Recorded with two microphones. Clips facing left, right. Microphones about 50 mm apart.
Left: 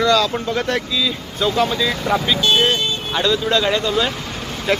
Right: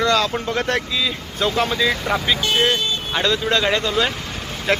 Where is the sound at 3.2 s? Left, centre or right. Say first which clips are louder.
Left 2 dB; right.